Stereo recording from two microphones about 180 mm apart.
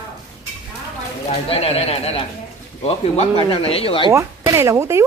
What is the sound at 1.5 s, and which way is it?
Speech, 35° left (ahead or behind).